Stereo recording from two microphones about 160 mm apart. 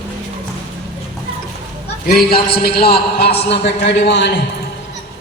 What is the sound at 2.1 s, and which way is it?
A man's voice, 70° left (ahead or behind).